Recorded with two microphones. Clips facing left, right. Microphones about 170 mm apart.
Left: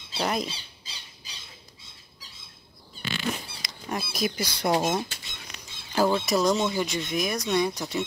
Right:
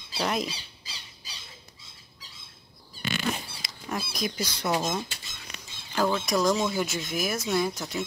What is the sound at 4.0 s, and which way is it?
Speech, 5° left (ahead or behind).